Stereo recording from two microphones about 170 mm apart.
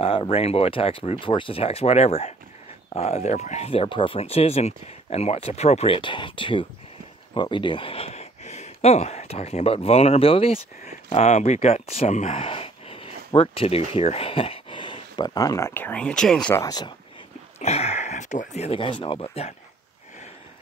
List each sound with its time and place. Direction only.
0.0 s speech: 35° left (ahead or behind); by 16.5 s 5° left (ahead or behind)
16.5 s speech: 20° left (ahead or behind)
17.6 s speech: 40° left (ahead or behind)